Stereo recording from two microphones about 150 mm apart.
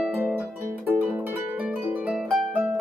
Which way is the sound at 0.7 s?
10° right (ahead or behind).